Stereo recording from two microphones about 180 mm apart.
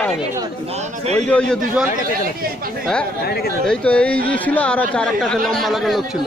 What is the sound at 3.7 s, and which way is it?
A man's voice, 5° left (ahead or behind).